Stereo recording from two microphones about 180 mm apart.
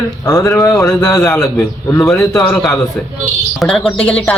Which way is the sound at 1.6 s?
5° left (ahead or behind).